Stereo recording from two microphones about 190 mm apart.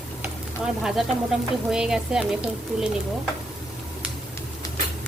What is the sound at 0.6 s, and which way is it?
Speech, 5° right (ahead or behind).